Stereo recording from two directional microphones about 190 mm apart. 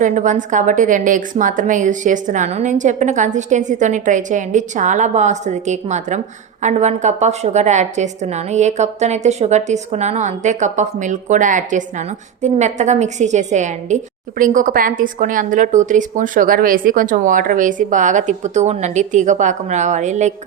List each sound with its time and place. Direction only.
0.0 s a woman's voice: 40° right (ahead or behind)